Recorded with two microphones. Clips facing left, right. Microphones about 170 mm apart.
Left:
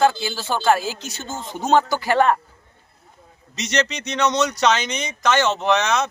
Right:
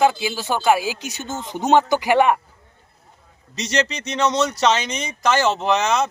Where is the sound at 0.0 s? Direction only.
15° right (ahead or behind).